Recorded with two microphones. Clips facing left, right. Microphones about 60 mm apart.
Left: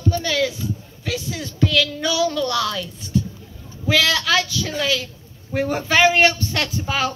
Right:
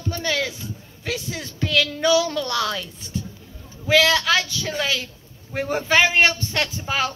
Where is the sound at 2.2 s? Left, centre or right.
Right.